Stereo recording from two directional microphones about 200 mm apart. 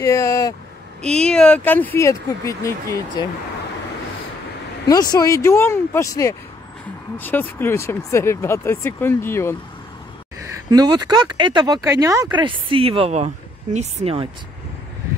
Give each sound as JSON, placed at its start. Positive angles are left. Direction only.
{"t": 0.0, "sound": "speech", "side_deg": 15}
{"t": 1.0, "sound": "speech", "side_deg": 5}
{"t": 4.8, "sound": "speech", "side_deg": 20}
{"t": 10.4, "sound": "speech", "side_deg": -15}